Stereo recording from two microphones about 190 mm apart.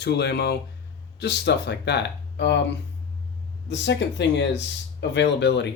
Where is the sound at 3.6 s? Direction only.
70° left (ahead or behind).